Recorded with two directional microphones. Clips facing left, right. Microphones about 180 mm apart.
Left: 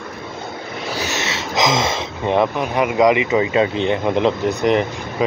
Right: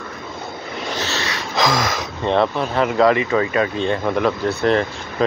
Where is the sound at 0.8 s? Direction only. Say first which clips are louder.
Left 1 dB; 15° left (ahead or behind).